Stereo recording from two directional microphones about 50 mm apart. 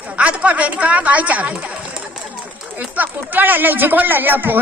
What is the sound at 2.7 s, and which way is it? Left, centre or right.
A woman's voice, right.